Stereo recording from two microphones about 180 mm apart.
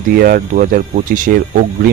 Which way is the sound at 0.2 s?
55° right (ahead or behind).